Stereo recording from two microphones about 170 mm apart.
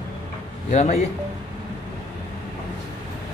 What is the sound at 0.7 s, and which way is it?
Speech, 40° left (ahead or behind).